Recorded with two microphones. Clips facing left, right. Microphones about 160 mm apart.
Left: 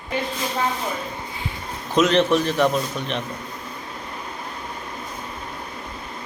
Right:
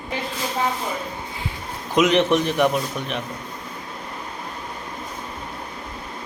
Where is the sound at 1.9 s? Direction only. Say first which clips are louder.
Even; 15° right (ahead or behind).